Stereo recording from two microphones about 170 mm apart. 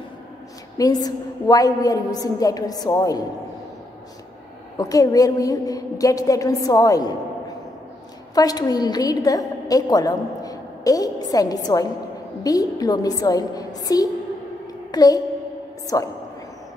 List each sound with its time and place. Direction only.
0.7 s a woman's voice: 20° left (ahead or behind)
4.7 s a woman's voice: 20° left (ahead or behind)
8.4 s a woman's voice: 20° left (ahead or behind)
14.9 s music: 25° left (ahead or behind)